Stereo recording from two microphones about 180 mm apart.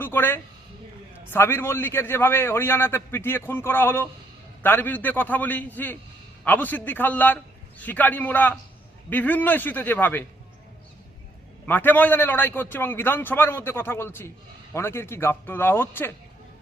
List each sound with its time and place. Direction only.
0.0 s a man's voice: 10° left (ahead or behind)
11.6 s a man's voice: 10° left (ahead or behind)